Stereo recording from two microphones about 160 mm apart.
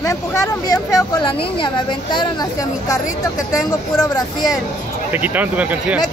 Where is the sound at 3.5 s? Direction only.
25° left (ahead or behind).